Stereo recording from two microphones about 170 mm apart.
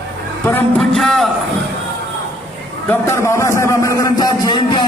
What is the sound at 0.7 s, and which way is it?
Speech, centre (ahead or behind).